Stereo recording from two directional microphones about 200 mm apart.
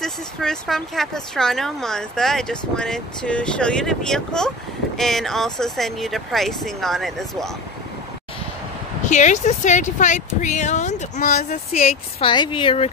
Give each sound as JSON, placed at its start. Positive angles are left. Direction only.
{"t": 0.0, "sound": "speech", "side_deg": 5}
{"t": 9.1, "sound": "speech", "side_deg": 35}